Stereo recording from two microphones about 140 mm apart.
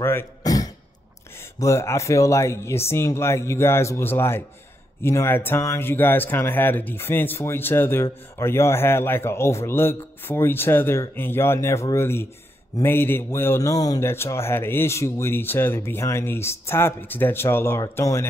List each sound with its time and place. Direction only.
0.0 s throat clearing: 15° left (ahead or behind)
1.4 s speech: 20° left (ahead or behind)